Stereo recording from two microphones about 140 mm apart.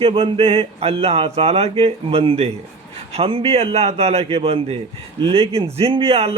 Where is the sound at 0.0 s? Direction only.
40° right (ahead or behind).